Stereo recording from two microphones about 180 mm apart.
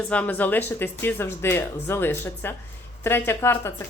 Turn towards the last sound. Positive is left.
turn(degrees=15)  # may be behind; listen again after turning